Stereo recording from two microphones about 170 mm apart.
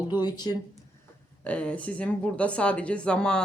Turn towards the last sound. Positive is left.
turn(degrees=5)  # may be behind; listen again after turning